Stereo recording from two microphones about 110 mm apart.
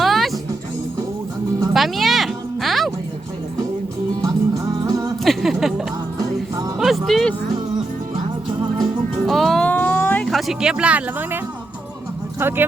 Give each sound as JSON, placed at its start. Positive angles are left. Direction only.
{"t": 0.0, "sound": "music", "side_deg": 0}
{"t": 1.7, "sound": "music", "side_deg": 0}
{"t": 4.2, "sound": "music", "side_deg": -35}
{"t": 5.2, "sound": "a sound", "side_deg": 0}
{"t": 6.7, "sound": "music", "side_deg": 0}
{"t": 9.2, "sound": "music", "side_deg": 0}
{"t": 9.6, "sound": "a sound", "side_deg": 15}
{"t": 10.2, "sound": "speech", "side_deg": 0}
{"t": 12.4, "sound": "speech", "side_deg": -20}